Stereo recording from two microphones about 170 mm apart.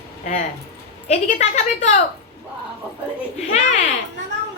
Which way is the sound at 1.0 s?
40° left (ahead or behind).